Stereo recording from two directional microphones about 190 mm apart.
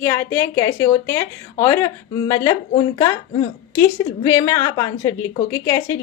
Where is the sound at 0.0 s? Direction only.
15° left (ahead or behind).